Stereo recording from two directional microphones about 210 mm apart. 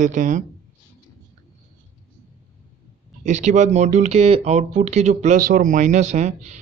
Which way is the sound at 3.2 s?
35° right (ahead or behind).